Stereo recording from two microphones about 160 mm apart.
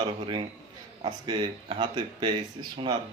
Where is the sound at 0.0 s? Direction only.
30° right (ahead or behind).